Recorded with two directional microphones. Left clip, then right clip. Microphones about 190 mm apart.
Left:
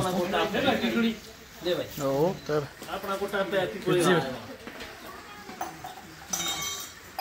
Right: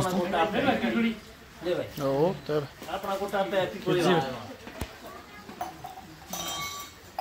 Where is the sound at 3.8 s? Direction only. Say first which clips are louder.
Left 2 dB; centre (ahead or behind).